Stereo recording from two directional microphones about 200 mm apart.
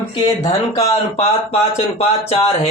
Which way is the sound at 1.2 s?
30° left (ahead or behind).